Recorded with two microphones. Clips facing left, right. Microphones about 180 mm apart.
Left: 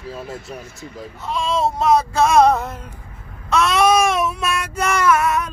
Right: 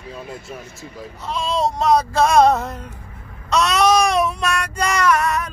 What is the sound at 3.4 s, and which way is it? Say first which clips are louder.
Child singing: left 1 dB; centre (ahead or behind).